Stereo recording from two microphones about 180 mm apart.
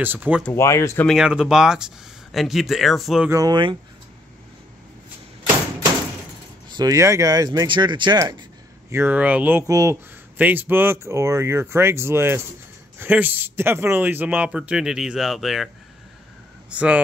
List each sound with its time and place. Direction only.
0.0 s speech: 10° right (ahead or behind)
0.5 s speech: 15° left (ahead or behind)
1.0 s speech: 5° right (ahead or behind)
3.3 s speech: 20° right (ahead or behind)
6.8 s speech: 20° right (ahead or behind)
8.9 s speech: 10° right (ahead or behind)
16.7 s speech: 5° right (ahead or behind)